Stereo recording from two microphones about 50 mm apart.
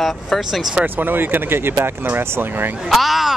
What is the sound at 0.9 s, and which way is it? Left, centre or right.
Speech, right.